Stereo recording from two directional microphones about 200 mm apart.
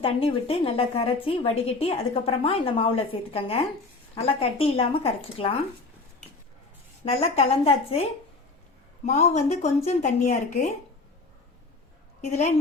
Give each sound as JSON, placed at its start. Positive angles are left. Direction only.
{"t": 0.0, "sound": "a woman's voice", "side_deg": 30}
{"t": 7.0, "sound": "speech", "side_deg": 30}
{"t": 9.0, "sound": "speech", "side_deg": 35}